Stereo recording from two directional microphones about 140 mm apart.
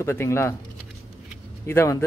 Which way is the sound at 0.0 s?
20° left (ahead or behind).